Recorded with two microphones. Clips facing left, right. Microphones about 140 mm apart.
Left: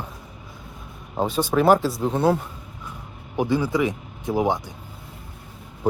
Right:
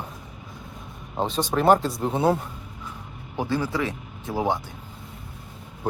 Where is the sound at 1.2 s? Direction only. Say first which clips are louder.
Left 3 dB; 10° left (ahead or behind).